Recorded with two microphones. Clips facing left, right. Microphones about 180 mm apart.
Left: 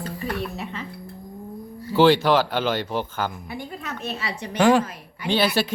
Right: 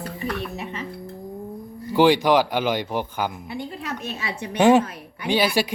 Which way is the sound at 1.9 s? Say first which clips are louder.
Even; 15° right (ahead or behind).